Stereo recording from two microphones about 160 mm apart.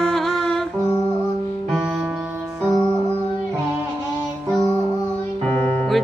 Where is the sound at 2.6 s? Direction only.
25° left (ahead or behind).